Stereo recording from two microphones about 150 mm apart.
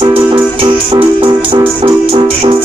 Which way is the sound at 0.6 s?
35° right (ahead or behind).